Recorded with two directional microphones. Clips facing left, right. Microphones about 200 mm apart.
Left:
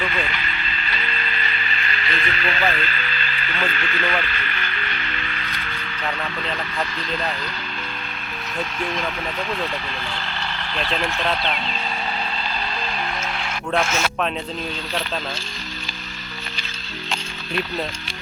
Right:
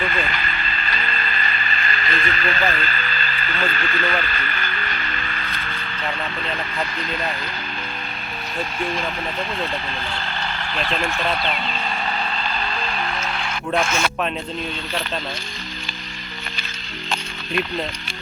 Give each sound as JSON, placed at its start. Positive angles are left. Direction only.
{"t": 0.0, "sound": "music", "side_deg": -45}
{"t": 13.7, "sound": "speech", "side_deg": 0}